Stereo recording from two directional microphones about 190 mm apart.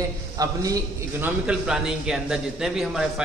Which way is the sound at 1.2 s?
5° right (ahead or behind).